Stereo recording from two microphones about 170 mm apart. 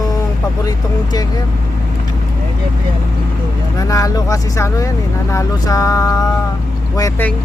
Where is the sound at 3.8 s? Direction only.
20° left (ahead or behind).